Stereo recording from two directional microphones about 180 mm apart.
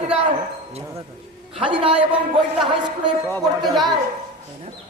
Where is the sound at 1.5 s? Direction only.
30° right (ahead or behind).